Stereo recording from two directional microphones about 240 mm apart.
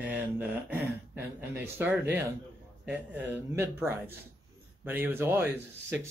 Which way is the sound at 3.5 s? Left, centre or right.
Centre.